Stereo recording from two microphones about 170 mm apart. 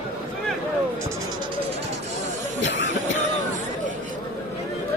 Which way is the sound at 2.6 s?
90° left.